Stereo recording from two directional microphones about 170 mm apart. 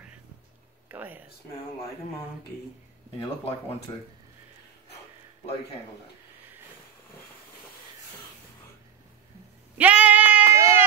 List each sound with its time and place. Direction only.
0.8 s speech: 10° right (ahead or behind)
9.8 s bleat: 10° right (ahead or behind)